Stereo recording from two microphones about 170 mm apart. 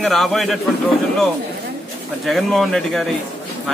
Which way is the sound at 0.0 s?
Centre (ahead or behind).